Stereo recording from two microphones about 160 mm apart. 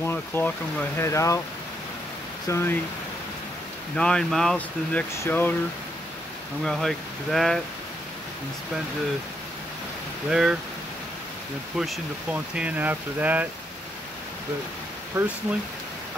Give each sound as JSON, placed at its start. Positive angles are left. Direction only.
{"t": 0.0, "sound": "speech", "side_deg": 15}
{"t": 2.4, "sound": "speech", "side_deg": 15}
{"t": 3.9, "sound": "speech", "side_deg": 5}
{"t": 6.6, "sound": "speech", "side_deg": 5}
{"t": 10.3, "sound": "speech", "side_deg": -5}
{"t": 11.7, "sound": "speech", "side_deg": -5}
{"t": 15.2, "sound": "speech", "side_deg": -15}